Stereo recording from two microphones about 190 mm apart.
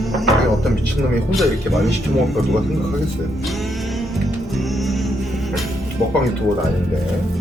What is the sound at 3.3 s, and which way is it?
Music, centre (ahead or behind).